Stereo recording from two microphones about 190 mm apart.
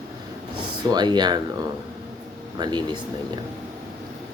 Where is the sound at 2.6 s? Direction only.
20° right (ahead or behind).